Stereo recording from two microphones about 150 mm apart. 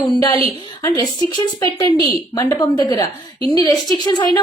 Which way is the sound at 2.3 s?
25° left (ahead or behind).